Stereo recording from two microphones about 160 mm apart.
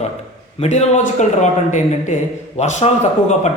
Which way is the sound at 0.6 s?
45° left (ahead or behind).